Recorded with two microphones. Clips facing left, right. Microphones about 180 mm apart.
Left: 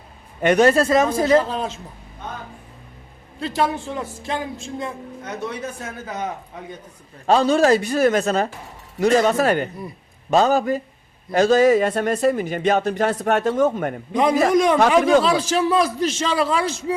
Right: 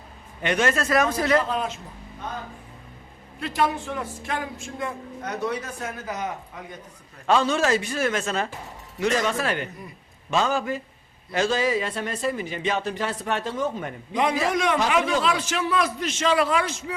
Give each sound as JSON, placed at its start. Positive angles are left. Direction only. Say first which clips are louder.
{"t": 0.4, "sound": "a man's voice", "louder": "left 8 dB", "side_deg": 40}
{"t": 3.4, "sound": "speech", "louder": "left 2 dB", "side_deg": 30}
{"t": 7.3, "sound": "a man's voice", "louder": "left 6 dB", "side_deg": 35}
{"t": 14.2, "sound": "a man's voice", "louder": "left 7 dB", "side_deg": 40}